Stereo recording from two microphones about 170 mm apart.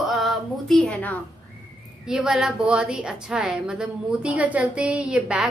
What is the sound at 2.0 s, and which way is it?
A woman's voice, 5° right (ahead or behind).